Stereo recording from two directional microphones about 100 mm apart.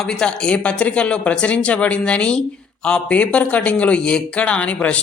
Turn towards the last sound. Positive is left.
turn(degrees=15)  # may be behind; listen again after turning